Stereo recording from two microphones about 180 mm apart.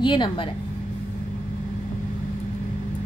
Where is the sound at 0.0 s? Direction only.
25° left (ahead or behind).